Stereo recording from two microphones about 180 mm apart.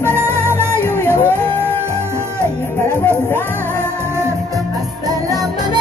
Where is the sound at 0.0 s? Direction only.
15° right (ahead or behind).